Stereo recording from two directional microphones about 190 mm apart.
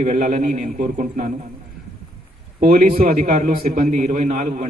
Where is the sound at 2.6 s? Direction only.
40° right (ahead or behind).